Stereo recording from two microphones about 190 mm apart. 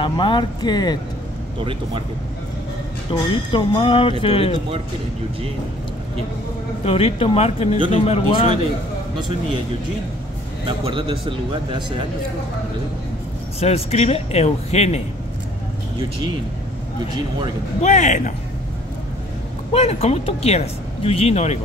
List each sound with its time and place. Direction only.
0.0 s speech: 25° left (ahead or behind)
1.6 s a man's voice: 25° right (ahead or behind)
3.3 s speech: 25° left (ahead or behind)
6.8 s speech: 30° left (ahead or behind)
10.9 s a man's voice: 25° right (ahead or behind)
13.6 s speech: 35° left (ahead or behind)
17.8 s speech: 40° left (ahead or behind)
19.7 s speech: 35° left (ahead or behind)